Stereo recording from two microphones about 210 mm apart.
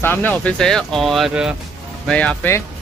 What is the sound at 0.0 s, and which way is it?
Speech, 10° left (ahead or behind).